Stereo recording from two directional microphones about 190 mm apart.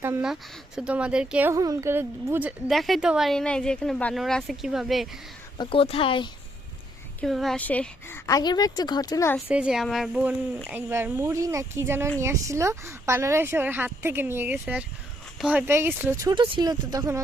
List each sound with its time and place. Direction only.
0.0 s a woman's voice: 10° right (ahead or behind)
5.5 s speech: 30° left (ahead or behind)
7.2 s a woman's voice: centre (ahead or behind)
8.3 s speech: 20° left (ahead or behind)
9.5 s a woman's voice: 5° right (ahead or behind)